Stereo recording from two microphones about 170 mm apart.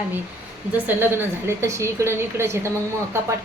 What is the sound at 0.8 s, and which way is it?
A woman's voice, 15° right (ahead or behind).